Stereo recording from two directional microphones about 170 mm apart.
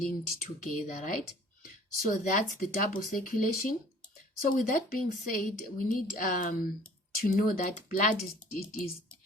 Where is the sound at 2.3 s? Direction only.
50° left (ahead or behind).